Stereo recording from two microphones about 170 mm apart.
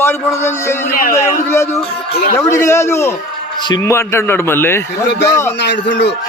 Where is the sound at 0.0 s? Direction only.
15° left (ahead or behind).